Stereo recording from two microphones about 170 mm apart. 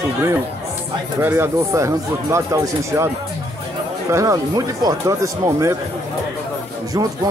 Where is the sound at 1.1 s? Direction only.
15° right (ahead or behind).